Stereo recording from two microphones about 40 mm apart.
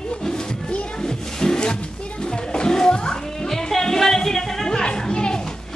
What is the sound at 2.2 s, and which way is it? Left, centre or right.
Music, centre.